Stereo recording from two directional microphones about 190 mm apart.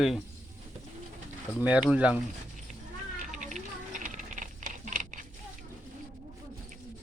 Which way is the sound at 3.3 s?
40° right (ahead or behind).